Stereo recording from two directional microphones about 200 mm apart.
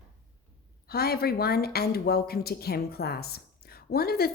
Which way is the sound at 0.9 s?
50° left (ahead or behind).